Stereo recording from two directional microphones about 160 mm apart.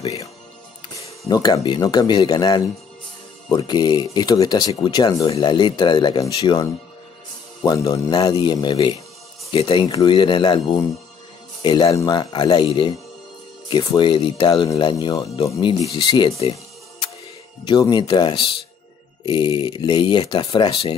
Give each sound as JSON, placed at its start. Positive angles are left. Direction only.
{"t": 1.3, "sound": "speech", "side_deg": 25}
{"t": 17.6, "sound": "speech", "side_deg": 30}